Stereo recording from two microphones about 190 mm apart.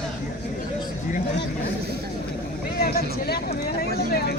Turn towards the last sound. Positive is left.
turn(degrees=50)  # may be behind; listen again after turning